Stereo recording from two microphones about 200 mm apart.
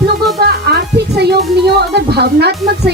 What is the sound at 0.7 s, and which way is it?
Music, 55° right (ahead or behind).